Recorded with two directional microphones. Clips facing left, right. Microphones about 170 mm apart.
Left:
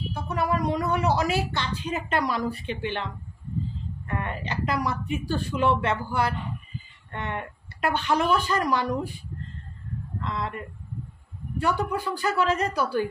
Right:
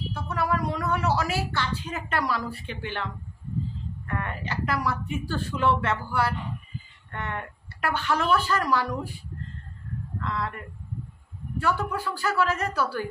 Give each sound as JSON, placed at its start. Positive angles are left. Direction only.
{"t": 0.1, "sound": "speech", "side_deg": 20}
{"t": 4.1, "sound": "speech", "side_deg": 20}
{"t": 10.2, "sound": "a woman's voice", "side_deg": 20}